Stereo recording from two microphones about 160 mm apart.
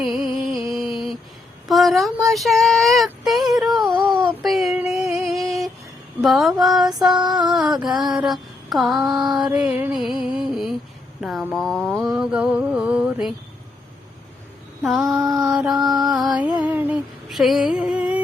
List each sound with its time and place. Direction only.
0.0 s music: centre (ahead or behind)
1.6 s a sound: centre (ahead or behind)
4.1 s music: centre (ahead or behind)
6.2 s mantra: centre (ahead or behind)
7.3 s a sound: 25° right (ahead or behind)
7.5 s mantra: 5° right (ahead or behind)
9.6 s music: 10° right (ahead or behind)
10.0 s a sound: 5° right (ahead or behind)
11.5 s mantra: centre (ahead or behind)
14.8 s mantra: centre (ahead or behind)
15.2 s mantra: 20° right (ahead or behind)
15.4 s mantra: 5° right (ahead or behind)
16.6 s humming: 10° right (ahead or behind)